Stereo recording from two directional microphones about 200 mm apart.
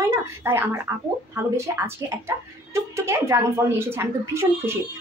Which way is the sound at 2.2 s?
15° right (ahead or behind).